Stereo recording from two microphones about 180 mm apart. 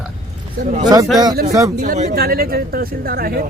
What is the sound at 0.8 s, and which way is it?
Speech, 20° right (ahead or behind).